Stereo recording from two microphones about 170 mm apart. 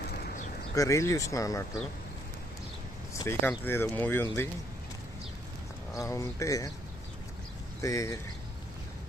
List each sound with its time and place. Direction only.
0.8 s speech: 20° left (ahead or behind)
3.1 s speech: 15° left (ahead or behind)
5.9 s speech: 20° left (ahead or behind)
7.8 s speech: 20° left (ahead or behind)